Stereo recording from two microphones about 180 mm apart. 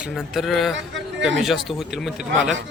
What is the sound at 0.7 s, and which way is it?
Speech, 85° right.